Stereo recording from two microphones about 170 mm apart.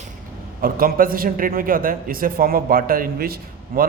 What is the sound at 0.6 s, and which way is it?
A man's voice, 60° right (ahead or behind).